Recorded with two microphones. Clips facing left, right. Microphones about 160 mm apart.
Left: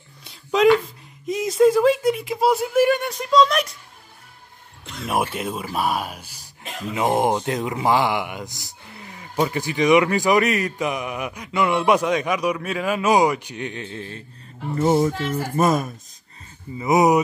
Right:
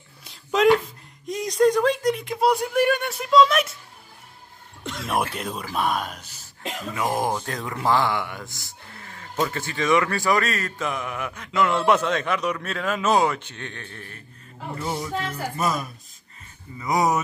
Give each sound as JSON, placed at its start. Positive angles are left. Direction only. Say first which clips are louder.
{"t": 0.2, "sound": "a sound", "louder": "left 2 dB", "side_deg": 0}
{"t": 1.2, "sound": "speech", "louder": "left 3 dB", "side_deg": 5}
{"t": 5.0, "sound": "speech", "louder": "left 3 dB", "side_deg": 0}
{"t": 7.0, "sound": "speech", "louder": "left 5 dB", "side_deg": 25}
{"t": 14.8, "sound": "speech", "louder": "left 10 dB", "side_deg": 45}
{"t": 16.7, "sound": "speech", "louder": "left 6 dB", "side_deg": 20}